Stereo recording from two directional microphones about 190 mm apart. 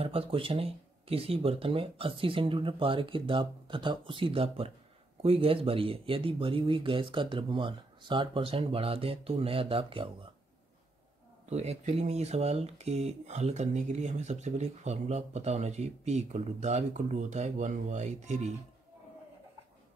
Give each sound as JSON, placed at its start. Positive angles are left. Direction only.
{"t": 0.0, "sound": "speech", "side_deg": -30}
{"t": 11.4, "sound": "speech", "side_deg": -35}